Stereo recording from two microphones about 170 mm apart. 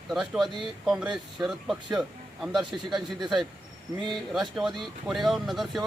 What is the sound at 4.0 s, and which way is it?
Speech, centre (ahead or behind).